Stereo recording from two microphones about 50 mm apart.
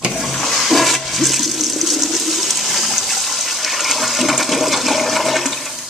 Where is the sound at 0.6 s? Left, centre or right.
Centre.